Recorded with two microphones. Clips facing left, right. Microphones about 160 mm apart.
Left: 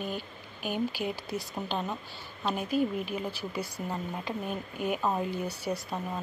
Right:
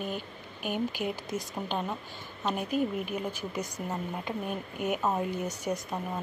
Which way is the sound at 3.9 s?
5° right (ahead or behind).